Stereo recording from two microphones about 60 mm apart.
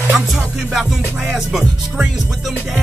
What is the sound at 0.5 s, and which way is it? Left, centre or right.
Music, centre.